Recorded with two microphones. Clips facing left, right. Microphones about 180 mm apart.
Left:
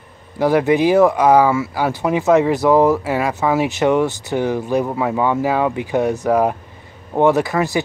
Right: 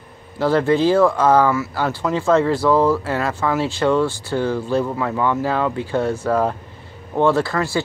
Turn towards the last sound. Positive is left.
turn(degrees=15)  # may be behind; listen again after turning